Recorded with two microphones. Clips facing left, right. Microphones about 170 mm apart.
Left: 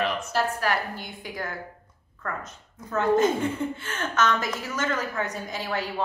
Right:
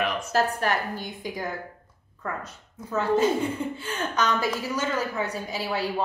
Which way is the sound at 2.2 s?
10° right (ahead or behind).